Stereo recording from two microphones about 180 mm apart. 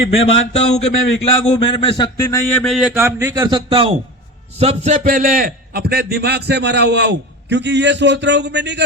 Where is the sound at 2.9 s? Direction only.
10° right (ahead or behind).